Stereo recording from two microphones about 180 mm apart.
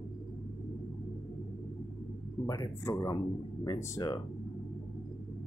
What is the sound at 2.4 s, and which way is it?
Speech, 20° left (ahead or behind).